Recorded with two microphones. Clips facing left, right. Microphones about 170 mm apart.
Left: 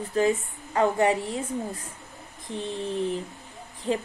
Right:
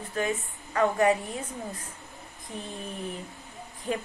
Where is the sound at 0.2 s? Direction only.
30° left (ahead or behind).